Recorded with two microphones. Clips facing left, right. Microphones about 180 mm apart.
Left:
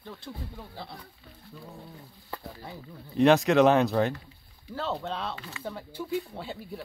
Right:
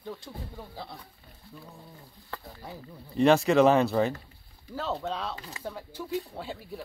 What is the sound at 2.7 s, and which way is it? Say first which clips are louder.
Speech: even; centre (ahead or behind).